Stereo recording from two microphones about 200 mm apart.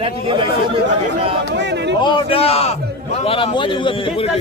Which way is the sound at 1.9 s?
25° left (ahead or behind).